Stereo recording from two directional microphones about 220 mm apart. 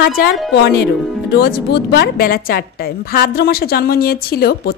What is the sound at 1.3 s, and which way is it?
A woman's voice, 45° left (ahead or behind).